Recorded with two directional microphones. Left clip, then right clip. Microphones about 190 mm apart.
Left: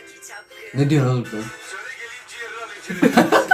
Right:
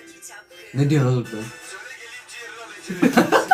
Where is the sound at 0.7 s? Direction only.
Centre (ahead or behind).